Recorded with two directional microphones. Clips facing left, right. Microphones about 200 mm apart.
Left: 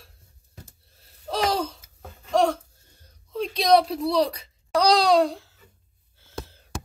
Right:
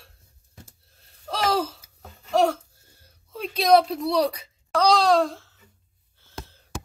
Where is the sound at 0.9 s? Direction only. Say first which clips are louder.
Left 2 dB; centre (ahead or behind).